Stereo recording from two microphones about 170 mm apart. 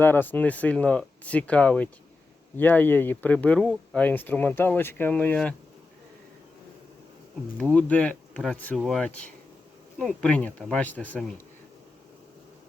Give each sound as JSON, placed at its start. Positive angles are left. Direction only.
{"t": 0.0, "sound": "speech", "side_deg": 10}
{"t": 7.6, "sound": "speech", "side_deg": 5}